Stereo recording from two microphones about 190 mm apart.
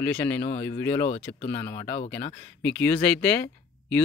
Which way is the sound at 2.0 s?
10° left (ahead or behind).